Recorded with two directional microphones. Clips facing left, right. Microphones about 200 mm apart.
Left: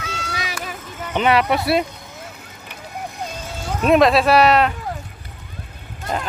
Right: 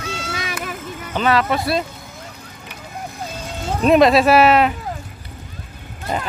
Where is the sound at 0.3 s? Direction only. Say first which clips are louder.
Even; 55° right (ahead or behind).